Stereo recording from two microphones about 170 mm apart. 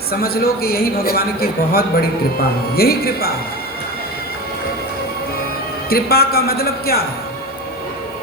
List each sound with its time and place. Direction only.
0.1 s a man's voice: 65° left (ahead or behind)
5.9 s a man's voice: 65° left (ahead or behind)